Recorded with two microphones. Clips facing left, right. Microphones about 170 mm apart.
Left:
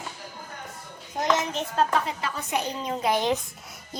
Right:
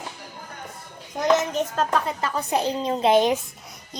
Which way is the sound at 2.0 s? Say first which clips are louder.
Right 5 dB; 40° right (ahead or behind).